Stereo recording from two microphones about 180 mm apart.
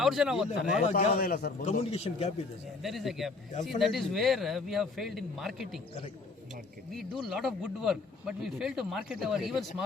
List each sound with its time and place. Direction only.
0.0 s speech: centre (ahead or behind)
1.2 s a man's voice: 55° left (ahead or behind)
1.6 s a man's voice: 35° left (ahead or behind)
2.8 s speech: centre (ahead or behind)
6.9 s speech: centre (ahead or behind)